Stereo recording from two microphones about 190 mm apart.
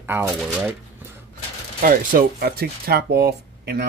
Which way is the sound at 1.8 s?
50° right (ahead or behind).